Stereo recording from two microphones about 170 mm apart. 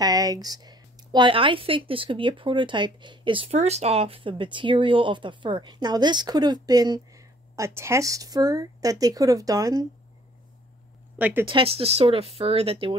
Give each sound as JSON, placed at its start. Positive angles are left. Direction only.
{"t": 0.0, "sound": "speech", "side_deg": -20}
{"t": 11.1, "sound": "speech", "side_deg": -10}
{"t": 11.4, "sound": "speech", "side_deg": -30}